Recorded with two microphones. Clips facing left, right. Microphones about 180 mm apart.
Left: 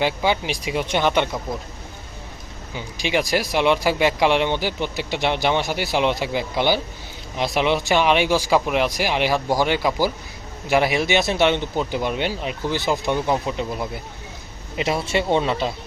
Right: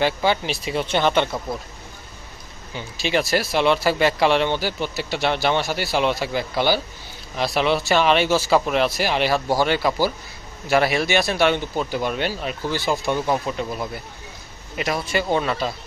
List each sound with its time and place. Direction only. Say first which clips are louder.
0.0 s speech: right 1 dB; 15° left (ahead or behind)
2.7 s speech: even; 15° left (ahead or behind)